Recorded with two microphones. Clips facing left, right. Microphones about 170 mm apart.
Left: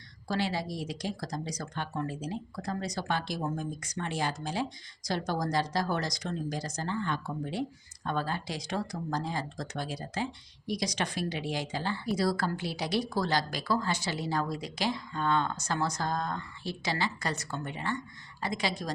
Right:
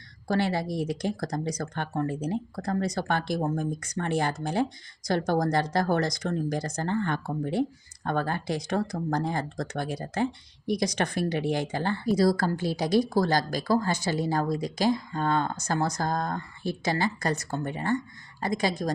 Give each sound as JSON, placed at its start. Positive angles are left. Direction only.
{"t": 0.3, "sound": "a woman's voice", "side_deg": -55}